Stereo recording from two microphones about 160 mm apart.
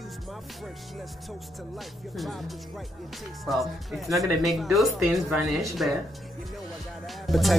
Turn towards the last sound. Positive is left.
turn(degrees=0)  # may be behind; listen again after turning